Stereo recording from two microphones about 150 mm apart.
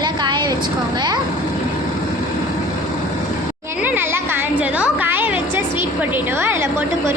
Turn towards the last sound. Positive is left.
turn(degrees=-15)  # may be behind; listen again after turning